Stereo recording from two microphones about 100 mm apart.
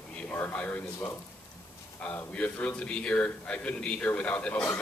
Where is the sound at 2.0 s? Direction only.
15° left (ahead or behind).